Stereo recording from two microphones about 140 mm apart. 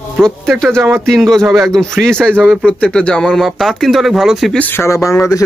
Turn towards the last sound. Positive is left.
turn(degrees=20)  # may be behind; listen again after turning